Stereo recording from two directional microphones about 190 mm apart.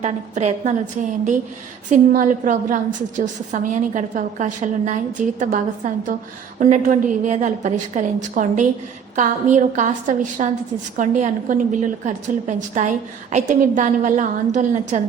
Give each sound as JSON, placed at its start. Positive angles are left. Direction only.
{"t": 0.0, "sound": "a woman's voice", "side_deg": -35}
{"t": 1.9, "sound": "a woman's voice", "side_deg": -45}